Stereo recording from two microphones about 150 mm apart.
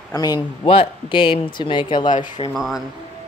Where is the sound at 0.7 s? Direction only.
35° left (ahead or behind).